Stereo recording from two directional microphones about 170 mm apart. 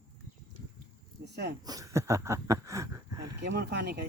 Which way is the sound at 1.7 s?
20° right (ahead or behind).